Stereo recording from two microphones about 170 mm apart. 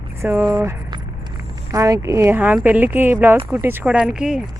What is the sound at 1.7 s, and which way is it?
Speech, 20° right (ahead or behind).